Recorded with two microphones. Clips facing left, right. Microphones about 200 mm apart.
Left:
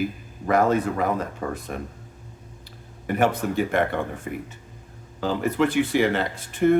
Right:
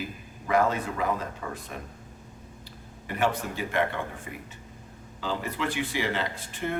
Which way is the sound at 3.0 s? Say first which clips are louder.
Left 6 dB; 50° left (ahead or behind).